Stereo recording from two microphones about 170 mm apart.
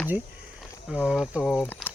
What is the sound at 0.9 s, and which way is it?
Speech, 5° right (ahead or behind).